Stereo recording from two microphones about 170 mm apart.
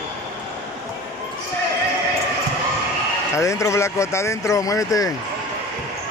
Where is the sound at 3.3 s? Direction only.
15° left (ahead or behind).